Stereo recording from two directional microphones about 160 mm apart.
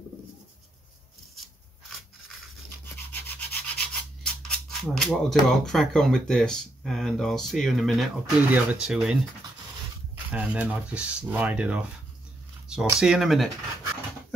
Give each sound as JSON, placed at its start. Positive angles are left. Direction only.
{"t": 1.3, "sound": "rub", "side_deg": 0}
{"t": 4.5, "sound": "a sound", "side_deg": 0}
{"t": 5.5, "sound": "speech", "side_deg": 5}